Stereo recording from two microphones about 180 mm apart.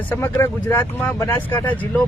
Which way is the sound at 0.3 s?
15° left (ahead or behind).